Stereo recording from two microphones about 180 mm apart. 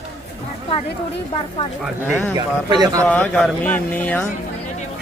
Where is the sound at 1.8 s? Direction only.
Centre (ahead or behind).